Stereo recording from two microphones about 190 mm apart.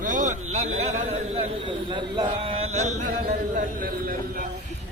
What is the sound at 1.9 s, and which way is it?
Speech, 25° right (ahead or behind).